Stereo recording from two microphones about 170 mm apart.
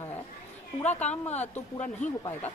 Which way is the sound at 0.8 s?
40° left (ahead or behind).